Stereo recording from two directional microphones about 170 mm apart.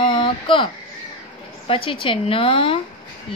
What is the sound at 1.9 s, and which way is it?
Speech, 30° left (ahead or behind).